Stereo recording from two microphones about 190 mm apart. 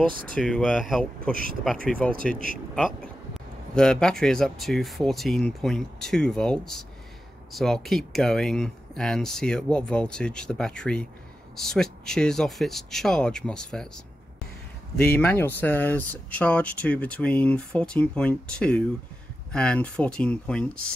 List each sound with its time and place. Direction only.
0.1 s speech: 50° right (ahead or behind)
0.4 s speech: 5° left (ahead or behind)
1.3 s speech: 50° right (ahead or behind)
1.9 s speech: 5° left (ahead or behind)
15.1 s speech: 10° left (ahead or behind)